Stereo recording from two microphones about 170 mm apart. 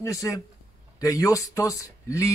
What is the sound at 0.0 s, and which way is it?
A man's voice, 20° left (ahead or behind).